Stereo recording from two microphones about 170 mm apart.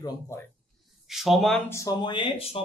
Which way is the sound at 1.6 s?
15° left (ahead or behind).